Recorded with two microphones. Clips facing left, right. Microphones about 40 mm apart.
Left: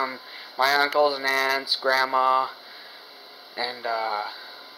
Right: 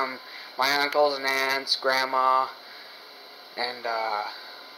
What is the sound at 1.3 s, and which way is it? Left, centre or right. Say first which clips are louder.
Speech: left 2 dB; centre.